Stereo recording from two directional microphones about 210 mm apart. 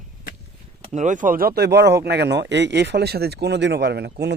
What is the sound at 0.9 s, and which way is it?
Speech, 35° right (ahead or behind).